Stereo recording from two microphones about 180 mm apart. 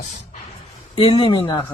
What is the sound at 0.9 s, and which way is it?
Speech, 30° left (ahead or behind).